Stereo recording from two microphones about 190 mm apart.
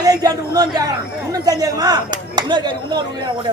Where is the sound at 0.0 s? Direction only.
20° right (ahead or behind).